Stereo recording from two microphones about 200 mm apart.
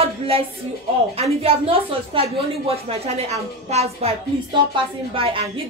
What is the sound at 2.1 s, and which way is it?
A woman's voice, 25° right (ahead or behind).